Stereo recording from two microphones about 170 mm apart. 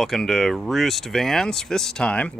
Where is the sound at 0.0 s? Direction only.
Centre (ahead or behind).